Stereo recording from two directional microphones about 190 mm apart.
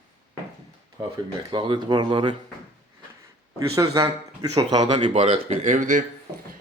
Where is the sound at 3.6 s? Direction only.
15° right (ahead or behind).